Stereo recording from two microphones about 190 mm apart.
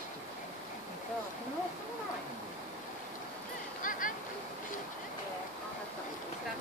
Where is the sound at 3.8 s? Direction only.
45° left (ahead or behind).